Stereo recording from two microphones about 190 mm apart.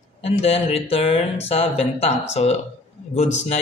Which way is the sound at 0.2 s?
30° left (ahead or behind).